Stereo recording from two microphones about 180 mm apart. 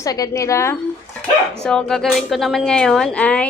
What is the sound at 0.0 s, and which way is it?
Speech, 20° left (ahead or behind).